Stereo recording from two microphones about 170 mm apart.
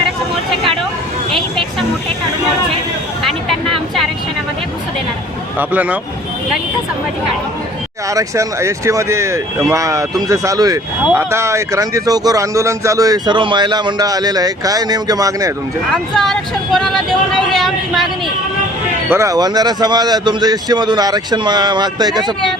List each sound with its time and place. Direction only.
1.3 s music: centre (ahead or behind)
5.5 s speech: 10° right (ahead or behind)
8.1 s speech: 15° right (ahead or behind)
16.1 s speech: centre (ahead or behind)
19.1 s speech: 20° right (ahead or behind)